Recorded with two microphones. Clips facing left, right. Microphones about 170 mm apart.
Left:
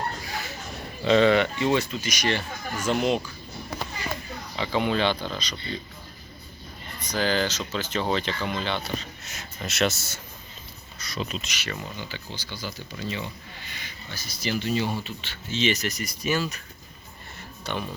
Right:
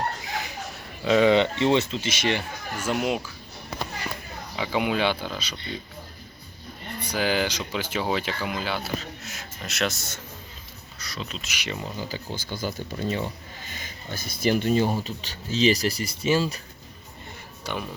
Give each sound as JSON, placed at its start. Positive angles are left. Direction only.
{"t": 0.3, "sound": "a sound", "side_deg": -20}
{"t": 1.0, "sound": "speech", "side_deg": -5}
{"t": 1.3, "sound": "speech", "side_deg": -25}
{"t": 4.5, "sound": "speech", "side_deg": -10}
{"t": 7.0, "sound": "speech", "side_deg": -10}
{"t": 11.0, "sound": "a sound", "side_deg": 20}
{"t": 11.4, "sound": "speech", "side_deg": -15}
{"t": 11.9, "sound": "speech", "side_deg": -40}
{"t": 17.7, "sound": "speech", "side_deg": -10}